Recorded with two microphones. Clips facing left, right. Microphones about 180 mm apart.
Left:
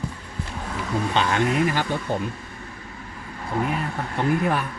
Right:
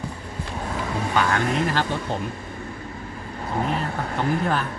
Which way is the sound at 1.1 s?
25° left (ahead or behind).